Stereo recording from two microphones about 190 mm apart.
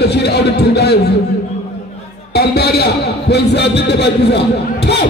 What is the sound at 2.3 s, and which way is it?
A man's voice, 60° left (ahead or behind).